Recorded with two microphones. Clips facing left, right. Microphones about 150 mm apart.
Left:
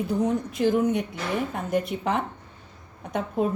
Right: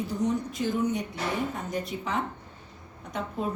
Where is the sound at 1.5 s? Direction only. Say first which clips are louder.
Left 6 dB; 60° left (ahead or behind).